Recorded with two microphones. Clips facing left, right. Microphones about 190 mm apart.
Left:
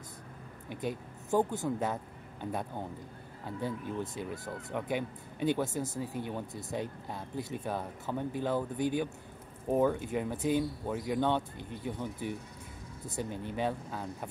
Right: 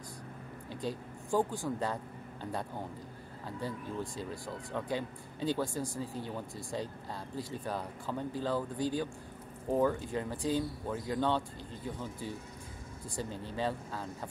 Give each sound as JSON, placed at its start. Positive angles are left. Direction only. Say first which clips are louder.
{"t": 0.7, "sound": "speech", "louder": "left 2 dB", "side_deg": 20}
{"t": 3.6, "sound": "speech", "louder": "left 3 dB", "side_deg": 20}